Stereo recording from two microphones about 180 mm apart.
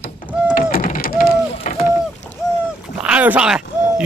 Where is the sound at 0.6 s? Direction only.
50° left (ahead or behind).